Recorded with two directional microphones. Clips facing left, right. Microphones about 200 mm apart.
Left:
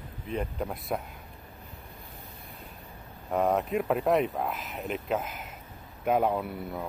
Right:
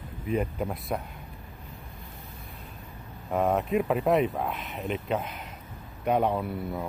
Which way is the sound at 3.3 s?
Centre (ahead or behind).